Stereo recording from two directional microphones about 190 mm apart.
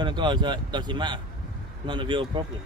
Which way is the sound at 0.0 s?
25° right (ahead or behind).